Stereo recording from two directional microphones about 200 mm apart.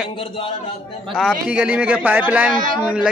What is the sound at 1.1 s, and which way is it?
A man's voice, centre (ahead or behind).